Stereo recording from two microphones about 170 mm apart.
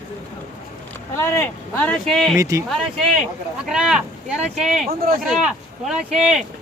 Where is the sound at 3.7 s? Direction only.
5° right (ahead or behind).